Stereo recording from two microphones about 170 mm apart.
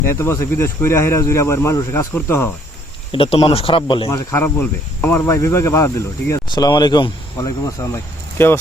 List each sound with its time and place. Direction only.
0.0 s speech: 15° left (ahead or behind)
3.1 s speech: 30° left (ahead or behind)
4.1 s speech: 15° left (ahead or behind)